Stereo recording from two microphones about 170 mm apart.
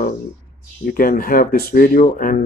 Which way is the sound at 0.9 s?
55° left (ahead or behind).